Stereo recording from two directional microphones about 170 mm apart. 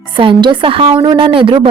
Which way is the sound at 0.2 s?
30° right (ahead or behind).